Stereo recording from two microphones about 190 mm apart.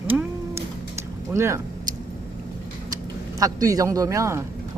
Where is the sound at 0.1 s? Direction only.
10° right (ahead or behind).